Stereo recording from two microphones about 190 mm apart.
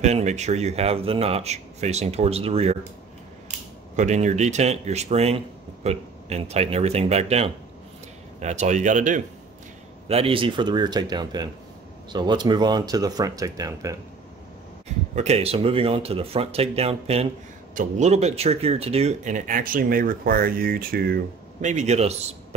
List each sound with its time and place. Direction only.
0.0 s speech: 35° right (ahead or behind)
3.9 s speech: 40° right (ahead or behind)
10.0 s speech: 30° right (ahead or behind)
15.1 s speech: 35° right (ahead or behind)